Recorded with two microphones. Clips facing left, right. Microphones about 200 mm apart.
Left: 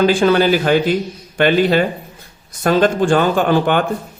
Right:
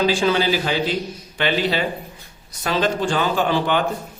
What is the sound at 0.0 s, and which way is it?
Speech, 55° left (ahead or behind).